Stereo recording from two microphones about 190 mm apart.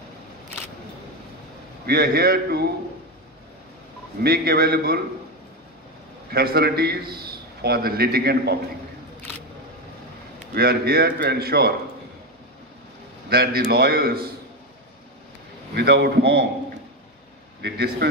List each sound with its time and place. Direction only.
1.9 s a man's voice: 55° right (ahead or behind)
4.2 s a man's voice: 55° right (ahead or behind)
6.3 s a man's voice: 55° right (ahead or behind)
10.5 s a man's voice: 55° right (ahead or behind)
13.3 s a man's voice: 55° right (ahead or behind)
15.7 s a man's voice: 60° right (ahead or behind)
17.6 s a man's voice: 60° right (ahead or behind)